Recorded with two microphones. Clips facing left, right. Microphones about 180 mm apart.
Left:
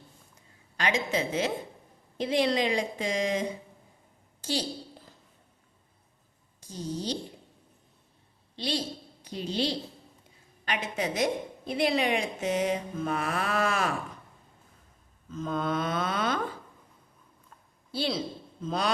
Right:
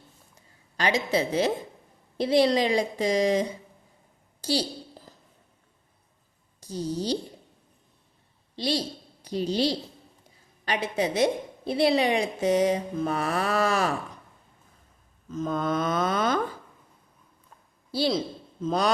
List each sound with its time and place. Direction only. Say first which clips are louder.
0.8 s a woman's voice: right 4 dB; 35° right (ahead or behind)
4.4 s a sound: right 4 dB; 35° right (ahead or behind)
6.6 s a woman's voice: right 5 dB; 40° right (ahead or behind)
8.5 s a woman's voice: right 4 dB; 40° right (ahead or behind)
15.3 s a woman's voice: right 3 dB; 40° right (ahead or behind)